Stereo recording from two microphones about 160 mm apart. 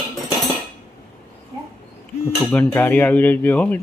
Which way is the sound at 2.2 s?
15° left (ahead or behind).